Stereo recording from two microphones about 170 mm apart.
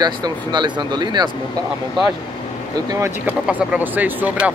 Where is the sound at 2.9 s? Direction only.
20° right (ahead or behind).